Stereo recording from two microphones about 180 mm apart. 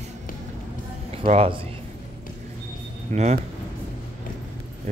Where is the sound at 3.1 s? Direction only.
40° right (ahead or behind).